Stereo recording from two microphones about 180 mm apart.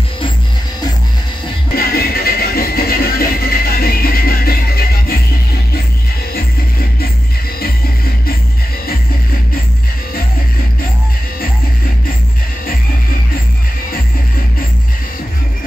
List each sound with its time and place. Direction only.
1.8 s music: 60° left (ahead or behind)